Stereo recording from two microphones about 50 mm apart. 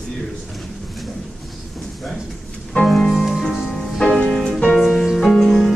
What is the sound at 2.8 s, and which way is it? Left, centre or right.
Music, centre.